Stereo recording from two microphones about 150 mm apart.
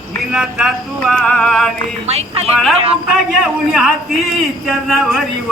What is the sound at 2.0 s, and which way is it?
Speech, 45° right (ahead or behind).